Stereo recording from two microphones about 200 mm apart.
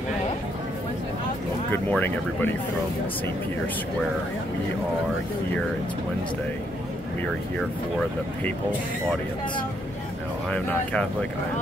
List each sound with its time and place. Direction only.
1.7 s speech: 10° left (ahead or behind)
10.5 s speech: 5° left (ahead or behind)